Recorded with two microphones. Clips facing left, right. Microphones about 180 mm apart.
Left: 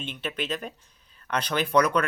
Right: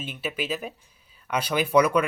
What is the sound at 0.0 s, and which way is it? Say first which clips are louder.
Speech: right 1 dB; 5° right (ahead or behind).